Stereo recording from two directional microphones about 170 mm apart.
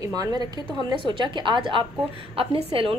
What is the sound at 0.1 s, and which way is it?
A woman's voice, 25° right (ahead or behind).